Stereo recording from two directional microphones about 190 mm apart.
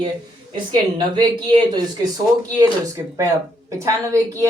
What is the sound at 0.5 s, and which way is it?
A woman's voice, 25° right (ahead or behind).